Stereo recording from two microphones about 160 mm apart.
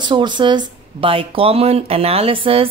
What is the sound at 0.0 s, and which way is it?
Speech, 30° right (ahead or behind).